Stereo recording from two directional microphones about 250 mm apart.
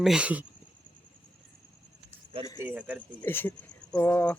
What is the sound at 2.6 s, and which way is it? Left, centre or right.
Speech, centre.